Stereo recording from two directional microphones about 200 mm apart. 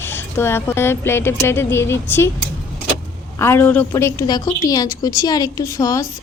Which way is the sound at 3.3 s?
10° left (ahead or behind).